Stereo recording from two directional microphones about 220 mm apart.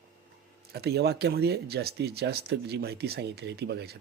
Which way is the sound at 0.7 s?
45° right (ahead or behind).